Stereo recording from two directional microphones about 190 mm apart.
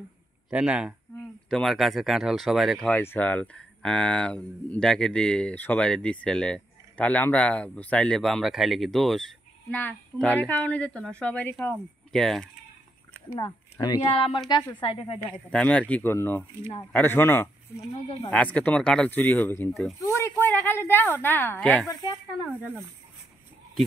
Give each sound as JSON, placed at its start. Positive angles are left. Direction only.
{"t": 0.5, "sound": "speech", "side_deg": -5}
{"t": 13.4, "sound": "speech", "side_deg": 20}
{"t": 15.5, "sound": "a woman's voice", "side_deg": 5}
{"t": 20.0, "sound": "a woman's voice", "side_deg": 15}
{"t": 22.5, "sound": "speech", "side_deg": -10}